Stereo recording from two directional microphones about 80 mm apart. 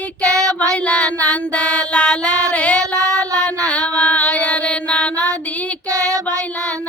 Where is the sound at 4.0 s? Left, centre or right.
Centre.